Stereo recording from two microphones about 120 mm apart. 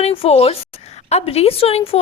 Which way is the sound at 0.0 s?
55° left (ahead or behind).